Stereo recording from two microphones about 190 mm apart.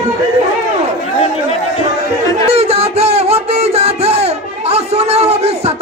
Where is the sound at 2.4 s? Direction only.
30° right (ahead or behind).